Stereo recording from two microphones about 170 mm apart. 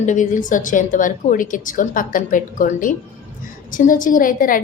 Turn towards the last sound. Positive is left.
turn(degrees=55)  # may be behind; listen again after turning